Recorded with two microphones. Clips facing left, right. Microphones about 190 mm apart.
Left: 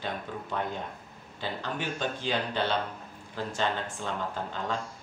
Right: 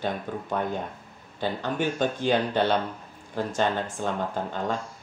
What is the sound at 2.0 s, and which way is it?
Speech, 50° right (ahead or behind).